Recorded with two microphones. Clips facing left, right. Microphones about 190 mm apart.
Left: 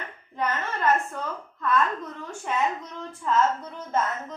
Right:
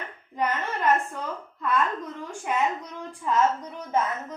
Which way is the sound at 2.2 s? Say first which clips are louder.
Right 1 dB; 10° right (ahead or behind).